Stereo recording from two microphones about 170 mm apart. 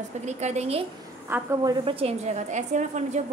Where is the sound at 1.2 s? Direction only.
15° right (ahead or behind); by 3.2 s 45° right (ahead or behind).